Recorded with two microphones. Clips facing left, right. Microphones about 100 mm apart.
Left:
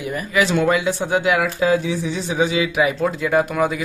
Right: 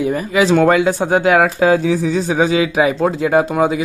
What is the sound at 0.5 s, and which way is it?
Speech, 45° right (ahead or behind).